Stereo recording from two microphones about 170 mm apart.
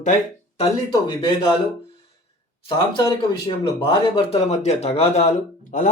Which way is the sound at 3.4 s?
30° left (ahead or behind).